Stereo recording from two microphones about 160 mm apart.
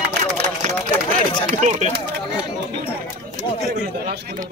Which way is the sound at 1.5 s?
50° right (ahead or behind).